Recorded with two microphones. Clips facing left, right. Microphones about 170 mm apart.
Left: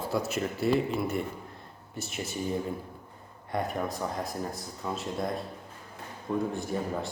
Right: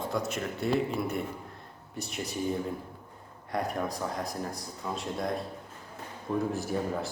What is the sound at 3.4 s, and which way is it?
A man's voice, centre (ahead or behind).